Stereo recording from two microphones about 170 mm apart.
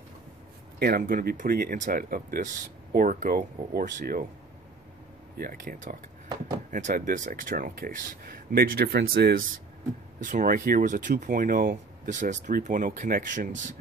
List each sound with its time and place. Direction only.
0.7 s speech: 65° right (ahead or behind)
5.4 s speech: 55° right (ahead or behind)
10.2 s speech: 55° right (ahead or behind)